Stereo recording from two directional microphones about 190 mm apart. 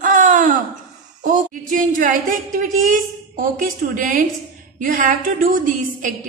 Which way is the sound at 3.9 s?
45° right (ahead or behind).